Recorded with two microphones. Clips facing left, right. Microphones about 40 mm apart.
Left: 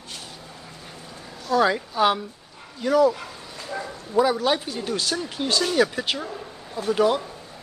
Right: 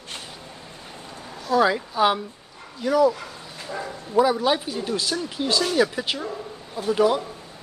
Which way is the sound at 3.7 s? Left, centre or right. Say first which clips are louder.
Right 1 dB; centre.